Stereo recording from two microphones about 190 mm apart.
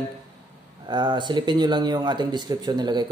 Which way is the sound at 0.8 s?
25° right (ahead or behind).